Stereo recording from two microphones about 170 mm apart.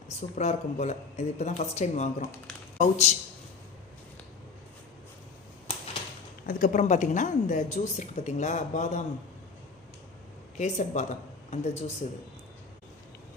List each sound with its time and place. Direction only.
0.2 s speech: 40° left (ahead or behind)
6.4 s a woman's voice: 55° left (ahead or behind)
10.6 s a woman's voice: 45° left (ahead or behind)